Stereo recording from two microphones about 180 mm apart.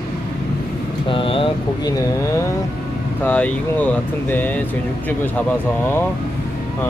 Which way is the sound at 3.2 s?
10° left (ahead or behind).